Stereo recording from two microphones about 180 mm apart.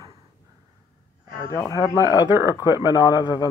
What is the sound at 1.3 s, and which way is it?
A man's voice, 15° left (ahead or behind).